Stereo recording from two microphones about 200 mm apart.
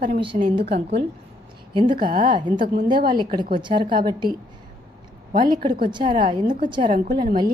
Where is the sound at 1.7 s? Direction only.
25° right (ahead or behind).